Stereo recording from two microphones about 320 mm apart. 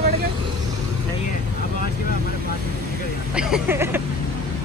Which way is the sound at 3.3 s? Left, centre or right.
Centre.